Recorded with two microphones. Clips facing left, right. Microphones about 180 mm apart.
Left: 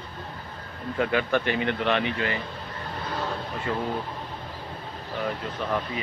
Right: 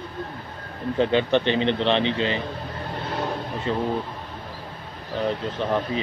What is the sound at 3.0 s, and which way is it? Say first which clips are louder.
Vehicle: right 3 dB; 20° right (ahead or behind).